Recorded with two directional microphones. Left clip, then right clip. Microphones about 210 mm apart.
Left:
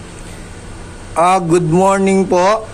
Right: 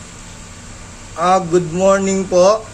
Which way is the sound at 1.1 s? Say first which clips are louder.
Left 2 dB; 35° left (ahead or behind).